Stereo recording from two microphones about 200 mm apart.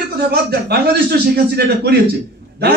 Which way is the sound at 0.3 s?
50° right (ahead or behind).